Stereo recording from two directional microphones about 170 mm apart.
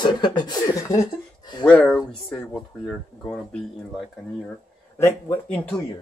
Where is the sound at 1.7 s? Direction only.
5° left (ahead or behind).